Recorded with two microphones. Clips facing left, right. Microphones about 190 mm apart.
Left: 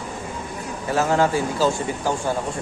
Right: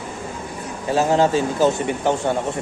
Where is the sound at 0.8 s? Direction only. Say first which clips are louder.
Right 2 dB; 20° right (ahead or behind).